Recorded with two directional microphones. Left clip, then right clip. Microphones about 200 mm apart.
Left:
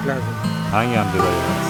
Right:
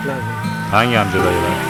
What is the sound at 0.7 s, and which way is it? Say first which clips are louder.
Speech: right 5 dB; centre (ahead or behind).